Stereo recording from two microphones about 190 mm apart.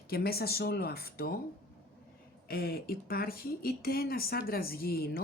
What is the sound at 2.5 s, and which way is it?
Speech, 55° left (ahead or behind).